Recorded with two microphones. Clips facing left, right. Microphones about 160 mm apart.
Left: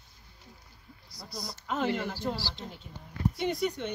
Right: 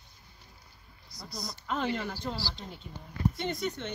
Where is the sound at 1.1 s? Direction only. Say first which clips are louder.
Right 1 dB; 20° right (ahead or behind).